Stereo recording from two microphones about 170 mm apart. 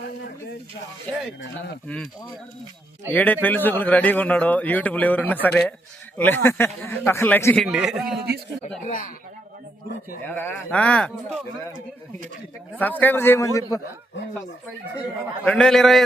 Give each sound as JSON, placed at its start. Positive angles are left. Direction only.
{"t": 3.1, "sound": "a man's voice", "side_deg": 10}
{"t": 7.6, "sound": "a man's voice", "side_deg": -5}
{"t": 8.8, "sound": "speech", "side_deg": 50}
{"t": 10.2, "sound": "a man's voice", "side_deg": 10}
{"t": 12.8, "sound": "a man's voice", "side_deg": 10}
{"t": 15.4, "sound": "a man's voice", "side_deg": 5}